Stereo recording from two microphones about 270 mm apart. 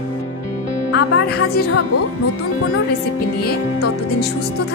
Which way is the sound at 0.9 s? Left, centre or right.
Left.